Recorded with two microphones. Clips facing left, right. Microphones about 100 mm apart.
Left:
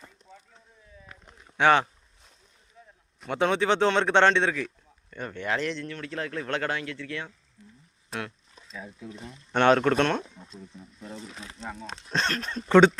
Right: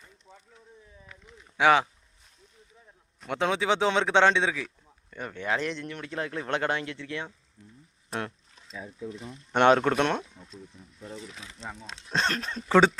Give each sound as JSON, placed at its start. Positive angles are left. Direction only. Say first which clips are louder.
{"t": 1.5, "sound": "speech", "louder": "even", "side_deg": -5}
{"t": 3.2, "sound": "speech", "louder": "left 3 dB", "side_deg": 0}
{"t": 5.9, "sound": "speech", "louder": "even", "side_deg": -20}
{"t": 9.5, "sound": "speech", "louder": "even", "side_deg": -15}
{"t": 11.6, "sound": "speech", "louder": "left 3 dB", "side_deg": 0}